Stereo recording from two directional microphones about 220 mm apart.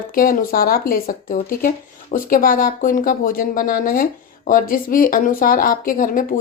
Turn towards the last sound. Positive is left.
turn(degrees=40)  # may be behind; listen again after turning